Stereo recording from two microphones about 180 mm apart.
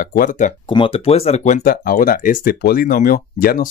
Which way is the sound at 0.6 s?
30° left (ahead or behind).